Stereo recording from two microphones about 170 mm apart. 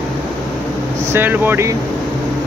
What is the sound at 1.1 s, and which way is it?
Speech, 10° right (ahead or behind).